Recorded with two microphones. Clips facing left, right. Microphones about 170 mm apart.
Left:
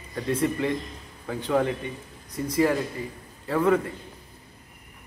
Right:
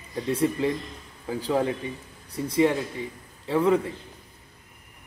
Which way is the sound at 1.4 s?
30° right (ahead or behind).